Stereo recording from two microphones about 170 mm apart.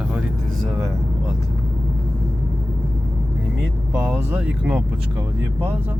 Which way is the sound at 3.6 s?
10° right (ahead or behind).